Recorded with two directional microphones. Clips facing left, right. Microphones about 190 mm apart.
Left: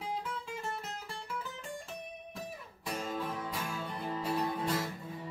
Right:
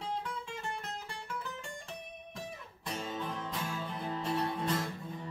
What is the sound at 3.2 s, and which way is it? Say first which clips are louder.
Music: left 1 dB; 5° left (ahead or behind).